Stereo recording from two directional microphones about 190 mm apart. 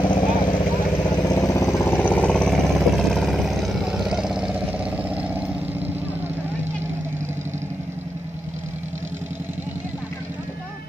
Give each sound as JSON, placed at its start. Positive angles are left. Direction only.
{"t": 0.0, "sound": "vehicle", "side_deg": 25}